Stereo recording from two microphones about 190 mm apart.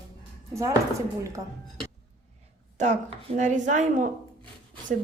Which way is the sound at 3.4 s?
40° right (ahead or behind).